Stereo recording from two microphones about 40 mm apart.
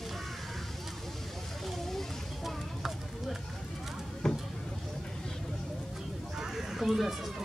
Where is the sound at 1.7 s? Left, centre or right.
Centre.